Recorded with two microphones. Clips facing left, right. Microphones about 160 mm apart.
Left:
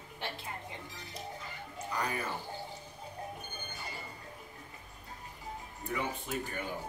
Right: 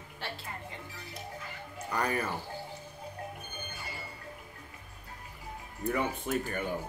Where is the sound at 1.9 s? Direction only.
55° right (ahead or behind).